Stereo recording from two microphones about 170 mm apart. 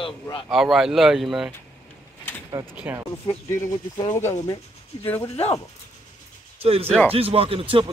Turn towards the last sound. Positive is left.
turn(degrees=-35)  # may be behind; listen again after turning